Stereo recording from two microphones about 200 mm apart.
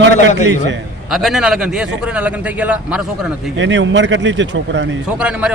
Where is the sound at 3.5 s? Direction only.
65° right (ahead or behind).